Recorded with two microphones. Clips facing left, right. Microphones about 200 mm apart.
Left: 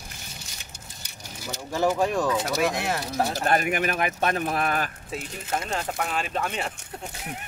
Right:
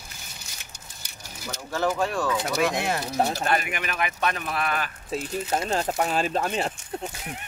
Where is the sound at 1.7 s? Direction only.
15° left (ahead or behind).